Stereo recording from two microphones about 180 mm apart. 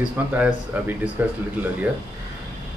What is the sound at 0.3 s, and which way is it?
Speech, 10° right (ahead or behind).